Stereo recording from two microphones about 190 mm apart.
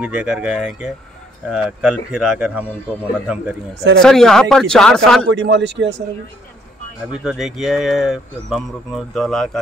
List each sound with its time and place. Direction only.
0.0 s speech: 5° right (ahead or behind)
4.0 s speech: centre (ahead or behind)
5.3 s speech: 65° right (ahead or behind)
7.1 s speech: 5° right (ahead or behind)